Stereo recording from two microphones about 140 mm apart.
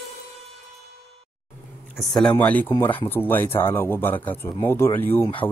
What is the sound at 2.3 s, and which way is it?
Speech, 15° left (ahead or behind).